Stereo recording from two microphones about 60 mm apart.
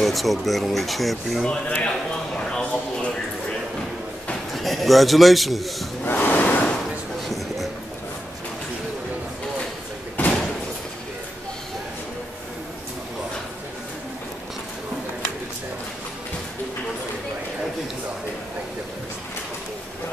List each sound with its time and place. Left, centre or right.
0.0 s speech: centre
1.8 s speech: centre
4.6 s a man's voice: centre
6.0 s a sound: left
10.2 s slam: left